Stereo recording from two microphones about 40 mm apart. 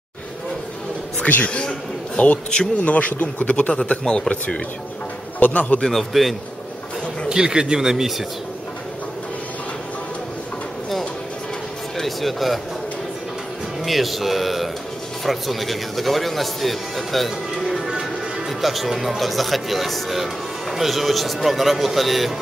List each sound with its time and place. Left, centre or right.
1.2 s speech: left
1.6 s a man's voice: left
3.7 s a man's voice: left
5.4 s speech: left
5.9 s speech: centre
7.2 s speech: centre
12.0 s speech: centre
13.8 s speech: centre